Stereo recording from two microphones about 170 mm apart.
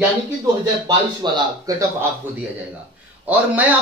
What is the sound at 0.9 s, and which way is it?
Speech, 25° right (ahead or behind).